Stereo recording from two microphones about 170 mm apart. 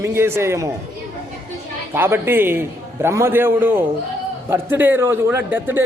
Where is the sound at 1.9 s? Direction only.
15° right (ahead or behind).